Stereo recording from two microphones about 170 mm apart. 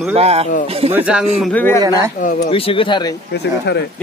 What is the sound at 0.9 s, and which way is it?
Speech, 5° right (ahead or behind).